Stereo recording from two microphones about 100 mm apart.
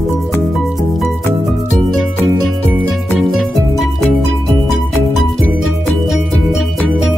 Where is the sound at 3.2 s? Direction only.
Centre (ahead or behind).